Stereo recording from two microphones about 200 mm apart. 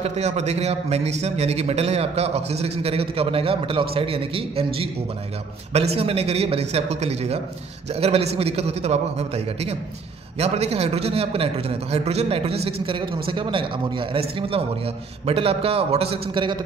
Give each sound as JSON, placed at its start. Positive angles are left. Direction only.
{"t": 0.0, "sound": "a man's voice", "side_deg": -35}